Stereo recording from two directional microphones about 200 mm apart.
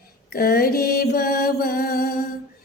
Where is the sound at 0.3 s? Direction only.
50° left (ahead or behind).